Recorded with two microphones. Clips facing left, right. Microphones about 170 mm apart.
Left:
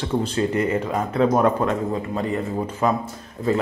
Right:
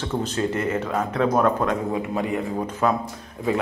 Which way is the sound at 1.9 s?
5° right (ahead or behind).